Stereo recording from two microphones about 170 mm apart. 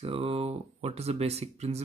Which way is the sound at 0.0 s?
35° right (ahead or behind).